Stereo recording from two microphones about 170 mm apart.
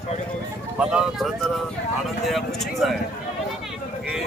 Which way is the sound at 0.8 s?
5° right (ahead or behind).